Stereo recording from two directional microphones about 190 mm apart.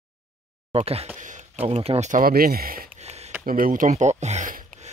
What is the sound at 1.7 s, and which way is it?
Speech, 30° right (ahead or behind).